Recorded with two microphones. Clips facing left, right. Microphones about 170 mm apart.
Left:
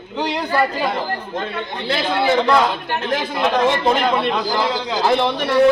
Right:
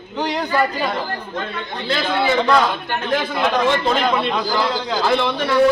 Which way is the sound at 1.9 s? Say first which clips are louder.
Left 1 dB; 5° left (ahead or behind).